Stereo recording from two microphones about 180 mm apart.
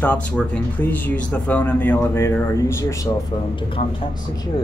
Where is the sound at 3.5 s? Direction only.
30° left (ahead or behind).